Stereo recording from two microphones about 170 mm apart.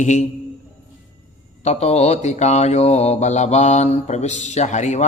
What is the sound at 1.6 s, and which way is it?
Mantra, 40° left (ahead or behind).